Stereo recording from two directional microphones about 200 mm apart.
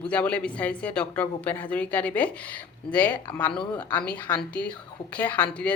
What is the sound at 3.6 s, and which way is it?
Speech, 20° left (ahead or behind).